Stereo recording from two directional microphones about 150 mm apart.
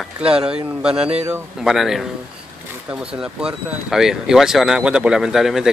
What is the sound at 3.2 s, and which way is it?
Speech, 5° right (ahead or behind).